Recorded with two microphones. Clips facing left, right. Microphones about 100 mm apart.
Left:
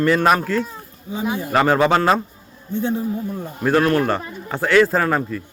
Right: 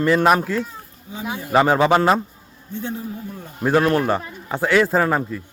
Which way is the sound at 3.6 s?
20° right (ahead or behind).